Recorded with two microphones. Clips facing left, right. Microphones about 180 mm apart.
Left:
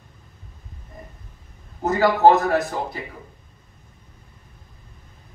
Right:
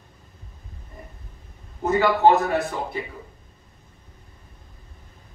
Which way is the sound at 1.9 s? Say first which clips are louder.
Left 2 dB; 40° left (ahead or behind).